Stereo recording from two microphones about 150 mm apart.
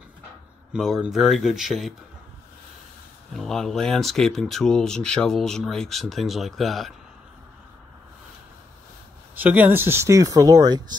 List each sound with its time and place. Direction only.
0.7 s speech: centre (ahead or behind)
3.3 s speech: centre (ahead or behind)
9.3 s speech: 10° right (ahead or behind); by 11.0 s 25° right (ahead or behind)